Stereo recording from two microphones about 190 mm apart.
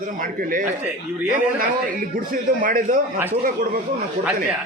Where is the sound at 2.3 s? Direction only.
45° right (ahead or behind).